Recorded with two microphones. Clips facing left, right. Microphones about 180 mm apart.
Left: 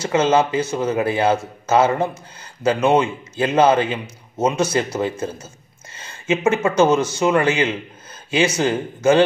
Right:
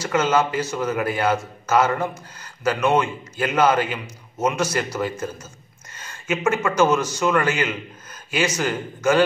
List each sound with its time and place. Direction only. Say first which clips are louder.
0.0 s a man's voice: left 3 dB; 25° left (ahead or behind)